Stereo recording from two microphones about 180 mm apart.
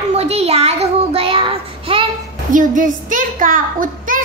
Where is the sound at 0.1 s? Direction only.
35° right (ahead or behind).